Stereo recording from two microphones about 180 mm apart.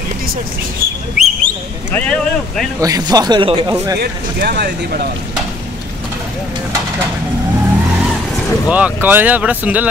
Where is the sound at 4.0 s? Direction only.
65° right (ahead or behind).